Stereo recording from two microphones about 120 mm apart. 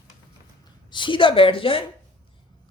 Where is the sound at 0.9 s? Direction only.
45° left (ahead or behind).